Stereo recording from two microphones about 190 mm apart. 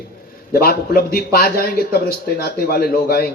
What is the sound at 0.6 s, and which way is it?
Speech, 50° left (ahead or behind).